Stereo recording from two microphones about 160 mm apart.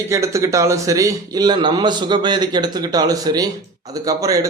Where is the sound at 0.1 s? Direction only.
20° right (ahead or behind).